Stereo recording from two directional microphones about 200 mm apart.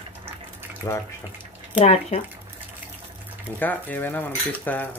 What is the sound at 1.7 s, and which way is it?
Speech, 30° left (ahead or behind).